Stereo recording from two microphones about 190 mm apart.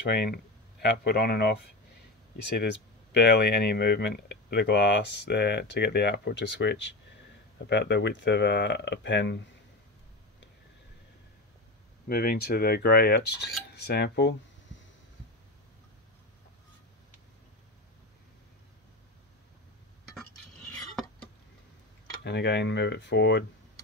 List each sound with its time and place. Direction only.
0.0 s speech: 55° left (ahead or behind)
12.1 s speech: 50° left (ahead or behind)
22.2 s speech: 65° left (ahead or behind)